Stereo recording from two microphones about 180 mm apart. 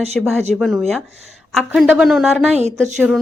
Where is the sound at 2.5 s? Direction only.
40° right (ahead or behind).